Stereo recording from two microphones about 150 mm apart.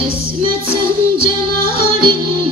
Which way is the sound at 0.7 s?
35° right (ahead or behind).